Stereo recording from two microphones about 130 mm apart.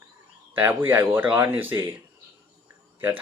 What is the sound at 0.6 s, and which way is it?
Speech, 15° right (ahead or behind).